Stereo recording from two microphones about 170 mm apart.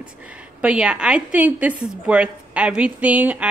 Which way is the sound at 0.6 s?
5° right (ahead or behind).